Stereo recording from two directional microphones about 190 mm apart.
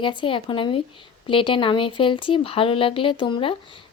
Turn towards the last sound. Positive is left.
turn(degrees=25)  # may be behind; listen again after turning